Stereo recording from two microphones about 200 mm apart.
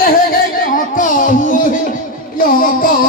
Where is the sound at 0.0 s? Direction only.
45° left (ahead or behind).